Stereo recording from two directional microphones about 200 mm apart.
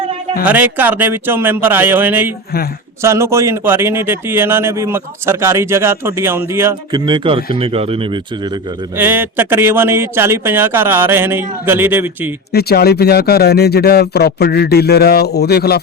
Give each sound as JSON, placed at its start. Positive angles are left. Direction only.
{"t": 0.4, "sound": "a man's voice", "side_deg": -10}
{"t": 9.0, "sound": "a man's voice", "side_deg": -10}
{"t": 12.5, "sound": "speech", "side_deg": 50}